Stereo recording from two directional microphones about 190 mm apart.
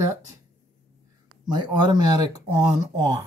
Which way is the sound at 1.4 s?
20° right (ahead or behind).